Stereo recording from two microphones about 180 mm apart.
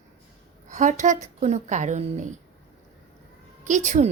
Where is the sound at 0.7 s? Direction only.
40° right (ahead or behind).